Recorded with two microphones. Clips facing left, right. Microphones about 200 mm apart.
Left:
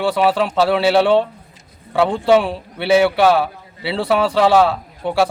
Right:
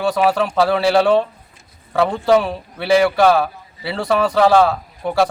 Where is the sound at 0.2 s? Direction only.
Centre (ahead or behind).